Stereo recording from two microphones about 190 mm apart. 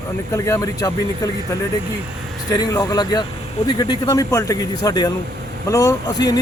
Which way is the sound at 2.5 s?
20° left (ahead or behind).